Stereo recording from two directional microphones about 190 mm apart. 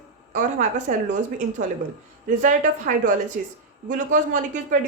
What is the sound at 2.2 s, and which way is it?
Speech, 40° right (ahead or behind).